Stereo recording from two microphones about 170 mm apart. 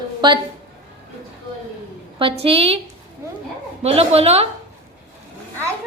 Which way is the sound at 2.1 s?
35° right (ahead or behind).